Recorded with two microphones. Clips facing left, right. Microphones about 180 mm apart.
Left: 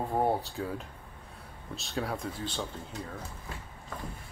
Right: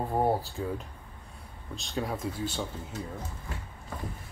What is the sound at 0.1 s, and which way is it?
Speech, 5° right (ahead or behind).